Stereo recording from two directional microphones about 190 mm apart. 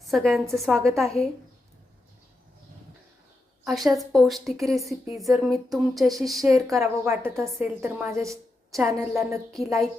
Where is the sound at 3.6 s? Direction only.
Centre (ahead or behind).